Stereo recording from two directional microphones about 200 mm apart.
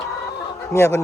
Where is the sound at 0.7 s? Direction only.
15° left (ahead or behind).